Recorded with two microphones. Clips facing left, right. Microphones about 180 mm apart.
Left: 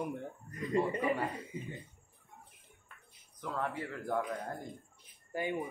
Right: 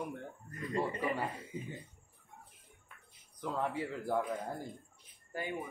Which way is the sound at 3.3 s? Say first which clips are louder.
Right 1 dB; 10° right (ahead or behind).